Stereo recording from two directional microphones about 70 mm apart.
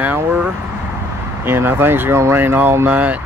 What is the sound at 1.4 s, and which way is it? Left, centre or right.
Speech, right.